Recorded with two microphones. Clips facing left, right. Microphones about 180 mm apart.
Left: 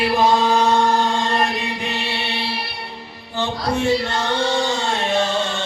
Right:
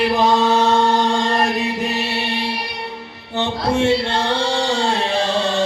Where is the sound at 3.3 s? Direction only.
25° right (ahead or behind).